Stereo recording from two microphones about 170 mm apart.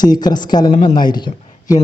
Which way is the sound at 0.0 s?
25° left (ahead or behind).